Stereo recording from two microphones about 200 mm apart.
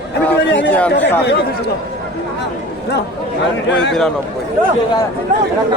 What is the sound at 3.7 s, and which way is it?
Speech, 65° left (ahead or behind).